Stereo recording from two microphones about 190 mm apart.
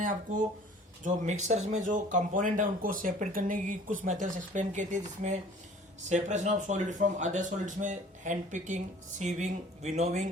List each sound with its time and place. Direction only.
0.0 s speech: 45° right (ahead or behind)